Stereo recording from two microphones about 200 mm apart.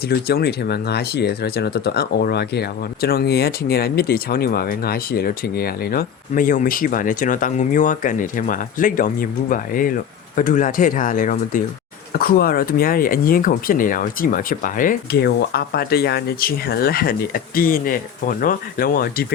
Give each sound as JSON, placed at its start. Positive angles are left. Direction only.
{"t": 0.1, "sound": "speech", "side_deg": 50}